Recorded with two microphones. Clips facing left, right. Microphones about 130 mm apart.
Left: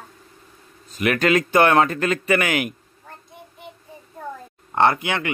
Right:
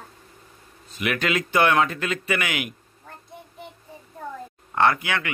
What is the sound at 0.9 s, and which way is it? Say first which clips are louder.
A man's voice: left 6 dB; 45° left (ahead or behind).